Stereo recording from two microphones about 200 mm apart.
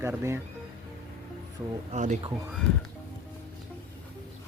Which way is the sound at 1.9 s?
40° right (ahead or behind).